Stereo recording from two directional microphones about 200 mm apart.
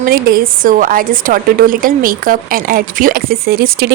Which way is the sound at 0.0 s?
45° right (ahead or behind).